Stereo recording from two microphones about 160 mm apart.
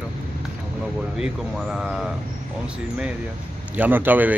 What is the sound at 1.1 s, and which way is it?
Speech, 5° right (ahead or behind).